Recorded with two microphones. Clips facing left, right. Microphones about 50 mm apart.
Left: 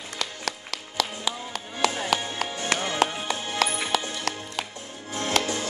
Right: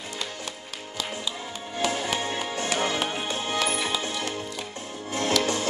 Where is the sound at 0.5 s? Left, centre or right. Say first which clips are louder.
Left 4 dB; left.